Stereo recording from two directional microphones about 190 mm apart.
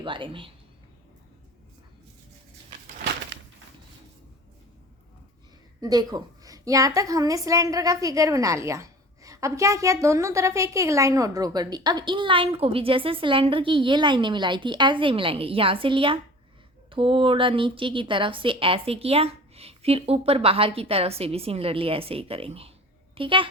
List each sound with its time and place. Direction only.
0.0 s a woman's voice: 25° right (ahead or behind)
5.8 s a woman's voice: 20° right (ahead or behind)